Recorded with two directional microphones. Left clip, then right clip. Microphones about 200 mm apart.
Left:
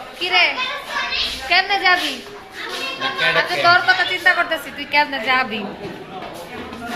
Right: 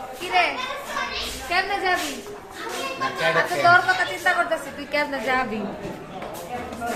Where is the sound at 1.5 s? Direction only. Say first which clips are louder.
Left 7 dB; 25° left (ahead or behind).